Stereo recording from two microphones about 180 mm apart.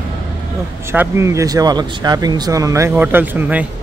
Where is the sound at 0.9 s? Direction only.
15° right (ahead or behind).